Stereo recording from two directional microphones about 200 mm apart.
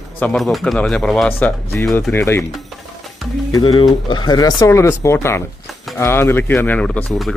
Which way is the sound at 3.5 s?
25° left (ahead or behind).